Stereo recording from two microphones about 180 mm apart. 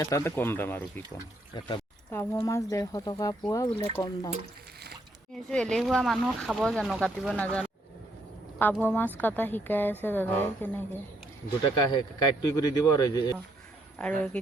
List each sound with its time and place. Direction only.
0.0 s speech: 15° left (ahead or behind)
1.5 s speech: 25° left (ahead or behind)
2.0 s speech: 15° left (ahead or behind)
5.5 s speech: 5° left (ahead or behind)
11.6 s speech: 25° left (ahead or behind)
14.0 s speech: 5° left (ahead or behind)